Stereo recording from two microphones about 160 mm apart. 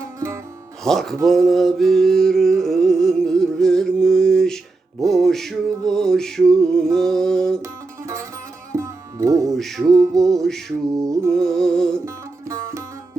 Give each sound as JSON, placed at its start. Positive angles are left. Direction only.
{"t": 0.9, "sound": "a sound", "side_deg": 0}
{"t": 5.0, "sound": "music", "side_deg": 0}
{"t": 7.6, "sound": "music", "side_deg": -20}
{"t": 9.5, "sound": "music", "side_deg": 0}
{"t": 11.9, "sound": "music", "side_deg": -15}